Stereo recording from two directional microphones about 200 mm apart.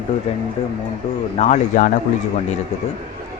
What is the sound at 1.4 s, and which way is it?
Speech, 35° left (ahead or behind).